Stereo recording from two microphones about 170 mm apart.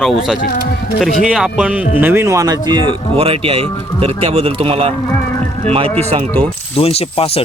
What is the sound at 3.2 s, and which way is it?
Speech, 35° right (ahead or behind).